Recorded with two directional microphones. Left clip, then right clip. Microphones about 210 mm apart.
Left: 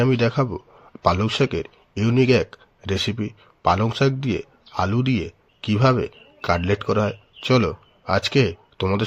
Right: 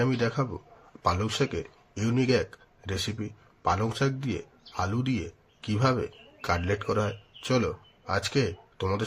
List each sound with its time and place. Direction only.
0.0 s a man's voice: 35° left (ahead or behind)